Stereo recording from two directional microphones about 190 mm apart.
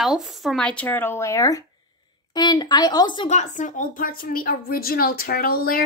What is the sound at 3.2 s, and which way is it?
A woman's voice, 40° left (ahead or behind).